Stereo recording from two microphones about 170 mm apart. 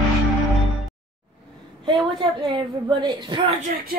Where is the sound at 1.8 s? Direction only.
25° right (ahead or behind).